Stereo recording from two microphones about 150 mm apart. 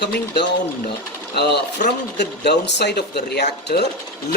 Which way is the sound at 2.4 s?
90° left.